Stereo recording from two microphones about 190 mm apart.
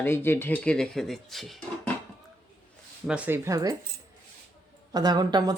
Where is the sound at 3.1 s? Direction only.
10° right (ahead or behind).